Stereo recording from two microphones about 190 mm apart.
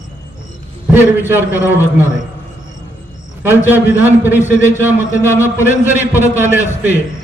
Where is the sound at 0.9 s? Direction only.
10° right (ahead or behind).